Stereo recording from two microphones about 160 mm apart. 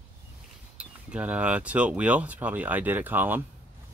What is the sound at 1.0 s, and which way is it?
Speech, 10° right (ahead or behind).